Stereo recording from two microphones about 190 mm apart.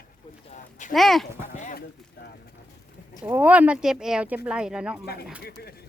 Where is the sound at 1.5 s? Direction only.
40° left (ahead or behind).